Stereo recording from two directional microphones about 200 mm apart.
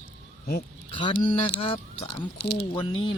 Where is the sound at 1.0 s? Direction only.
25° left (ahead or behind).